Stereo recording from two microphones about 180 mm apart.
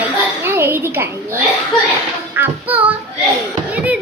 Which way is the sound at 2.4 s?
10° right (ahead or behind).